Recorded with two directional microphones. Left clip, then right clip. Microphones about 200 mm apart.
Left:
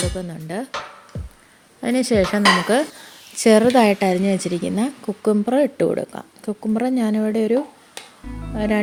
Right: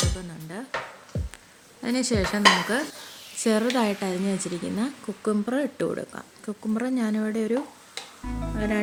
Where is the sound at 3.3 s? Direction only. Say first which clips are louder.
Left 10 dB; 35° left (ahead or behind).